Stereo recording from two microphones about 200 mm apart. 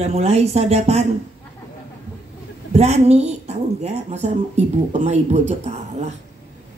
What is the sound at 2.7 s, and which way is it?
A woman's voice, 35° right (ahead or behind).